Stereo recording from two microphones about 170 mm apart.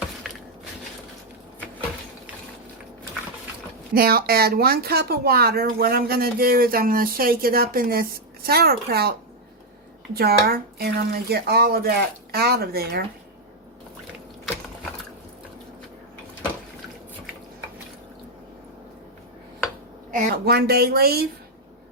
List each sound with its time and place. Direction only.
3.9 s speech: 60° right (ahead or behind)
10.2 s speech: 65° right (ahead or behind)
20.1 s speech: 60° right (ahead or behind)